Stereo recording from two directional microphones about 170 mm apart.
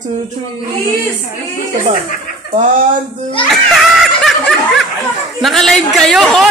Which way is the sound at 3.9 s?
Centre (ahead or behind).